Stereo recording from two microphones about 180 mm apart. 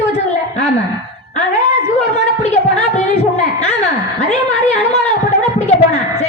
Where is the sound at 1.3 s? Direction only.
35° left (ahead or behind).